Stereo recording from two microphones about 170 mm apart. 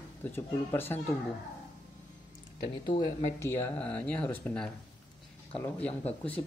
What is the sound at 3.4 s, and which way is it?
Speech, 10° left (ahead or behind).